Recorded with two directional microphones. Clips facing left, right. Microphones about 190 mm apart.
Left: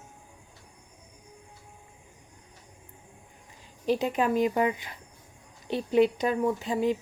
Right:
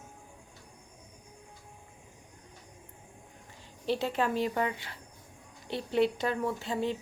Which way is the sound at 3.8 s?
15° left (ahead or behind).